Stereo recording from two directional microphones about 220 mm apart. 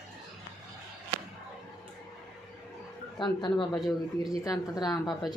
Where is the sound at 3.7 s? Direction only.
Centre (ahead or behind).